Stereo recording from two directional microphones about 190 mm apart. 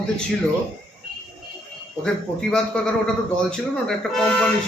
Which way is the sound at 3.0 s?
5° left (ahead or behind).